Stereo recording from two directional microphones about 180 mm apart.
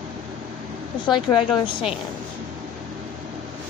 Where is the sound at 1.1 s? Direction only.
25° left (ahead or behind).